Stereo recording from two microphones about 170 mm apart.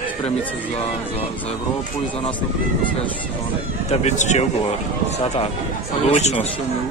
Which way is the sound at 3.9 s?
40° left (ahead or behind).